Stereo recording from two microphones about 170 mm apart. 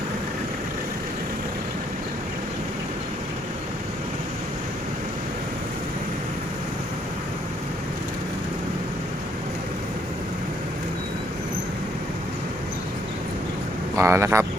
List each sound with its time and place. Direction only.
13.9 s speech: 15° right (ahead or behind)